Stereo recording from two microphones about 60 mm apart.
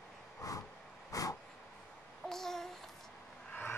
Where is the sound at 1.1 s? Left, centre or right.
Left.